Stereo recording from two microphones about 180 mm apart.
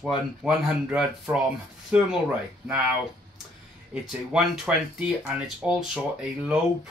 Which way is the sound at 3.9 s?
5° right (ahead or behind).